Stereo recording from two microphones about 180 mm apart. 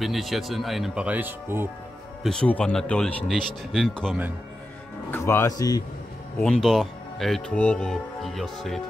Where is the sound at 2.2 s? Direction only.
5° left (ahead or behind).